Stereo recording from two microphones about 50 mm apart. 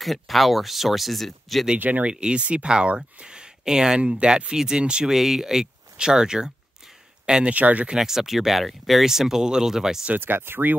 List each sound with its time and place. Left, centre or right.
0.0 s speech: centre
1.8 s speech: right
2.0 s speech: centre
5.1 s speech: centre
7.5 s speech: right
7.9 s speech: centre
10.1 s speech: right